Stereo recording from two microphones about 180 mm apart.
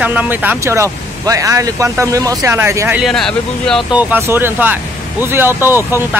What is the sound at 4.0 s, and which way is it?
Speech, 10° right (ahead or behind).